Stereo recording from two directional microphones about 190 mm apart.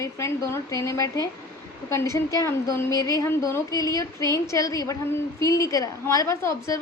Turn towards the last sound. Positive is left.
turn(degrees=15)  # may be behind; listen again after turning